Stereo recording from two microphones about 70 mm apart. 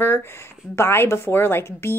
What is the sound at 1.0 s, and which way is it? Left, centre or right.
Speech, left.